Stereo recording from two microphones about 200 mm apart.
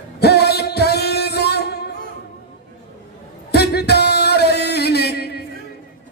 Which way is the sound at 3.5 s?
55° left (ahead or behind).